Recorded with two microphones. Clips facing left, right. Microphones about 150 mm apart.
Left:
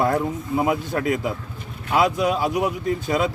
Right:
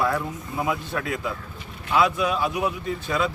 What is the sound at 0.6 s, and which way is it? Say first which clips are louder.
Speech: left 4 dB; 45° left (ahead or behind).